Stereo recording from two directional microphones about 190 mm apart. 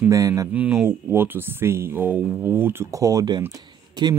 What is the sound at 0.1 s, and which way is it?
Speech, 15° right (ahead or behind).